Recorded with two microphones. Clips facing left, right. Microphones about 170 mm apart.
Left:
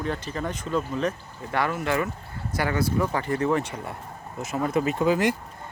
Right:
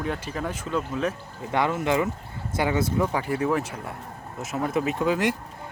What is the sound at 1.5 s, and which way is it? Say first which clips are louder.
Speech: right 2 dB; 20° right (ahead or behind).